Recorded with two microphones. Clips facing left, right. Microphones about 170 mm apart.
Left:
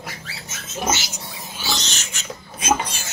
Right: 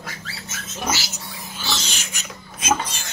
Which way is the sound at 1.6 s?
5° right (ahead or behind).